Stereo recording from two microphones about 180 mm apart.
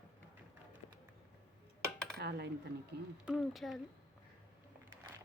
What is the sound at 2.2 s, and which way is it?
Cutlery, 65° right (ahead or behind).